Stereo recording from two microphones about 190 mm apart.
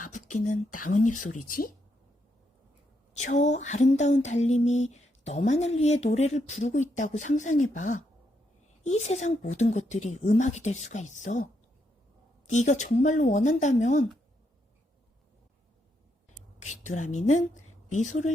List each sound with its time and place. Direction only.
0.1 s speech: 40° left (ahead or behind)
3.2 s speech: 35° left (ahead or behind)
12.5 s speech: 40° left (ahead or behind)
16.6 s a woman's voice: 40° left (ahead or behind)